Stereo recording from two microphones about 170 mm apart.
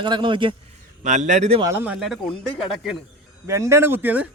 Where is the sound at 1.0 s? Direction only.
45° right (ahead or behind).